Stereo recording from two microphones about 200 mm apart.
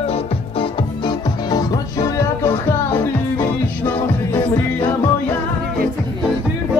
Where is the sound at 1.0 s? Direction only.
20° left (ahead or behind).